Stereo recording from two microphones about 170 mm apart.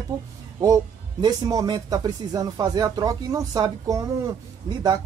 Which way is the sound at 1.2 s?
20° right (ahead or behind).